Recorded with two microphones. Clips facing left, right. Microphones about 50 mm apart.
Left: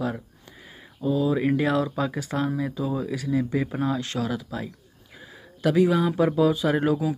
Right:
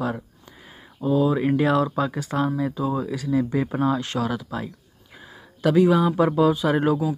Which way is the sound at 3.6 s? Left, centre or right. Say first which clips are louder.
Right 3 dB; centre.